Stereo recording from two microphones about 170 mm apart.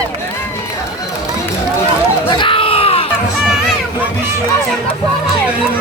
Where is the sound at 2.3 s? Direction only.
30° left (ahead or behind).